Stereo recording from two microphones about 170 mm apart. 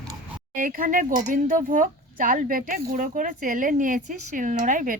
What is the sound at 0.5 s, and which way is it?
Speech, 55° right (ahead or behind).